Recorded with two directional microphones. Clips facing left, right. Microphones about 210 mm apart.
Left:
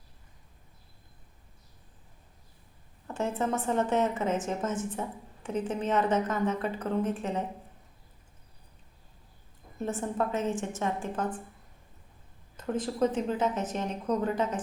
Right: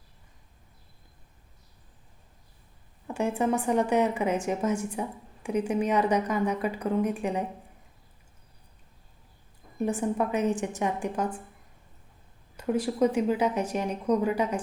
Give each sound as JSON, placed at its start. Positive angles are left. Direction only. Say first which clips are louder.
{"t": 3.1, "sound": "a woman's voice", "louder": "right 4 dB", "side_deg": -15}
{"t": 9.7, "sound": "a woman's voice", "louder": "right 4 dB", "side_deg": -15}
{"t": 12.5, "sound": "a woman's voice", "louder": "right 4 dB", "side_deg": -10}